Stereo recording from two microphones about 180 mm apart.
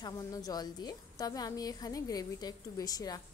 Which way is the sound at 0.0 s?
20° left (ahead or behind).